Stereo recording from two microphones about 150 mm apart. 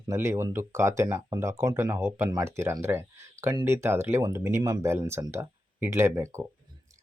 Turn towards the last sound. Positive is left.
turn(degrees=-20)  # may be behind; listen again after turning